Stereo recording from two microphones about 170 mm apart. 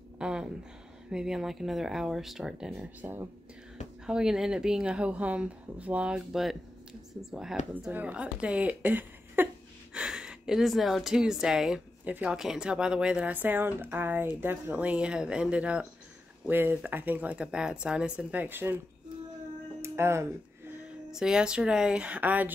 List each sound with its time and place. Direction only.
0.2 s a sound: 5° right (ahead or behind)
1.1 s speech: 5° right (ahead or behind)
19.8 s music: 15° right (ahead or behind)
21.1 s speech: 5° right (ahead or behind)